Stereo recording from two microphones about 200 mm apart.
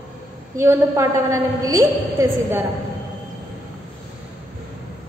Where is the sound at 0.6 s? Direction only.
15° right (ahead or behind).